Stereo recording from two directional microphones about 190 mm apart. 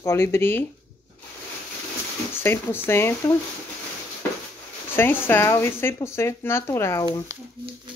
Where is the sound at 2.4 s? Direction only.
10° left (ahead or behind).